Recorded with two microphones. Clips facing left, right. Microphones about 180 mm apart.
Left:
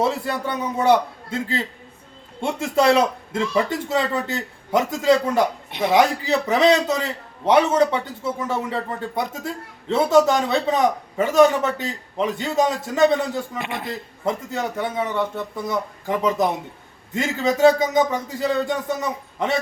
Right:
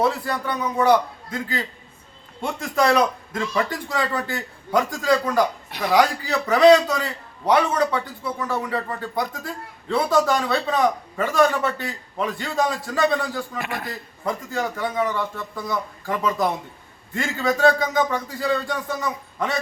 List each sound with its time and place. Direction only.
0.0 s a man's voice: 25° left (ahead or behind)